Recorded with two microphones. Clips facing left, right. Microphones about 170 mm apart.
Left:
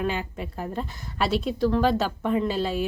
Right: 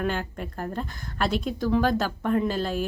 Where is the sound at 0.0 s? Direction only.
Centre (ahead or behind).